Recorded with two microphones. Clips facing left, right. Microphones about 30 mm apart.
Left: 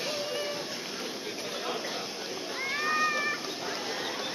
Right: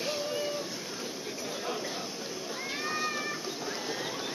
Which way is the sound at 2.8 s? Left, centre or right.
Left.